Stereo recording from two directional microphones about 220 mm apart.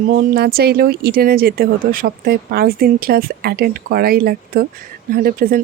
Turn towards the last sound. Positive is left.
turn(degrees=-40)  # may be behind; listen again after turning